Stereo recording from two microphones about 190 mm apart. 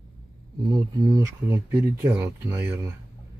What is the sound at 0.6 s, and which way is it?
Speech, 20° right (ahead or behind).